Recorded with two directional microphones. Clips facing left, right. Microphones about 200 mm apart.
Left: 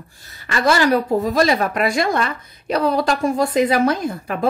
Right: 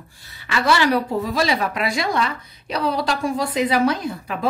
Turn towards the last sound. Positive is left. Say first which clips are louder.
# left 2 dB
turn(degrees=50)  # may be behind; listen again after turning